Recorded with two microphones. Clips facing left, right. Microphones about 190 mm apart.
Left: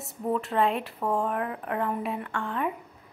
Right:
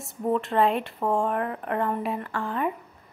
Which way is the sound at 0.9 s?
25° right (ahead or behind).